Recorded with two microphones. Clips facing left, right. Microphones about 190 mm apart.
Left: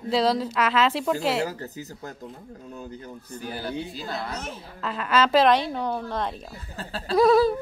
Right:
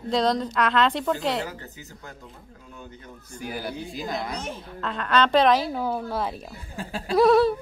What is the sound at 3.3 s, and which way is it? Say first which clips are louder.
A woman's voice: left 1 dB; 10° right (ahead or behind).